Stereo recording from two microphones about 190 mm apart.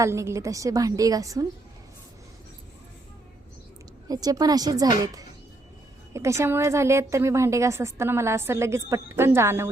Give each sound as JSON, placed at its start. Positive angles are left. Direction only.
{"t": 0.0, "sound": "a woman's voice", "side_deg": -15}
{"t": 4.1, "sound": "a woman's voice", "side_deg": -20}